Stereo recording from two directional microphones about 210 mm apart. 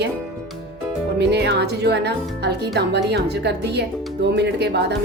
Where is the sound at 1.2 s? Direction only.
55° right (ahead or behind).